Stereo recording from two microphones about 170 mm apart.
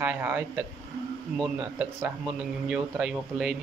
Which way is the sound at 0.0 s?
10° right (ahead or behind).